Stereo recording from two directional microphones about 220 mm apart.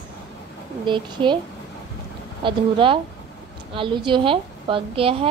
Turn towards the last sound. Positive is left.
turn(degrees=-25)  # may be behind; listen again after turning